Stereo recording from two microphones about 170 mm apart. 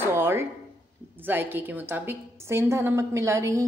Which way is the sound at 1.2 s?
10° right (ahead or behind).